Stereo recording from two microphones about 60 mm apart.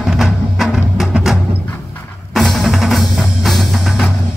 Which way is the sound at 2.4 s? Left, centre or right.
Centre.